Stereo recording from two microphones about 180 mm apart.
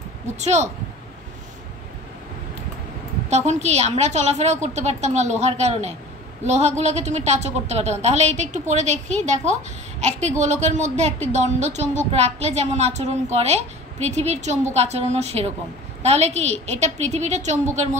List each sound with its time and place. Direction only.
0.4 s a woman's voice: 40° right (ahead or behind)
3.3 s a woman's voice: 40° right (ahead or behind)